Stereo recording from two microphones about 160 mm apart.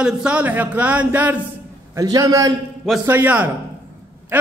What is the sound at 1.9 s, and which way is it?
Speech, 20° right (ahead or behind).